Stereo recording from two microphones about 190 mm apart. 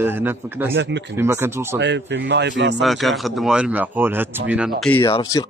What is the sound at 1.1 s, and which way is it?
Speech, 15° right (ahead or behind).